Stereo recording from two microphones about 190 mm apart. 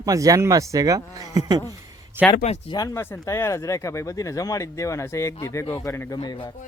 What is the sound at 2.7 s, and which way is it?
Speech, 20° left (ahead or behind).